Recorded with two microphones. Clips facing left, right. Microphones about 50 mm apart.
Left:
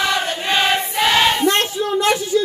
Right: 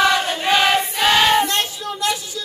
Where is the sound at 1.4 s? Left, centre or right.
Left.